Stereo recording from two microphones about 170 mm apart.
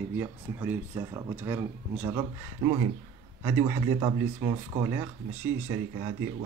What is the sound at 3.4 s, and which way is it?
Speech, 15° right (ahead or behind).